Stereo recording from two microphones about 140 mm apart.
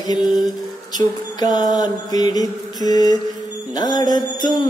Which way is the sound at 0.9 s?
30° left (ahead or behind).